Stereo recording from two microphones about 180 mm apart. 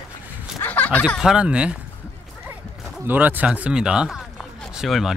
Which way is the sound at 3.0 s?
10° right (ahead or behind).